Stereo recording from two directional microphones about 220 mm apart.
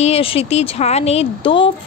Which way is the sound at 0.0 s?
25° left (ahead or behind).